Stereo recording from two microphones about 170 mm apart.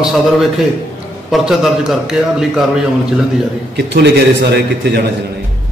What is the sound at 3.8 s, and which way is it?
A man's voice, 85° right.